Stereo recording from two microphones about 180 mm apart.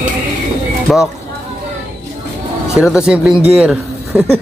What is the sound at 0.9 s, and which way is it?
Speech, centre (ahead or behind).